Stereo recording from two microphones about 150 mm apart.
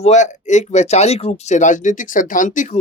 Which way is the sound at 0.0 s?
50° left (ahead or behind).